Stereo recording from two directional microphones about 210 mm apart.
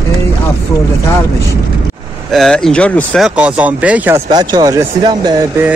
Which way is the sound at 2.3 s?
Centre (ahead or behind).